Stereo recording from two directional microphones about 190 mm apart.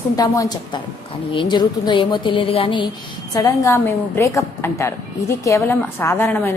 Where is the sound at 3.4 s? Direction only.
15° left (ahead or behind).